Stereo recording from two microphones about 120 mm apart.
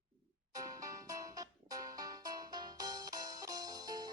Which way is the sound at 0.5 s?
30° right (ahead or behind).